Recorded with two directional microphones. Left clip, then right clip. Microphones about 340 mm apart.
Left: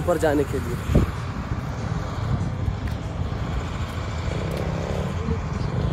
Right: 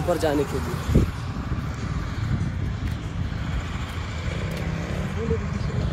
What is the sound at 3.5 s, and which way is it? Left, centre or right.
Vehicle, centre.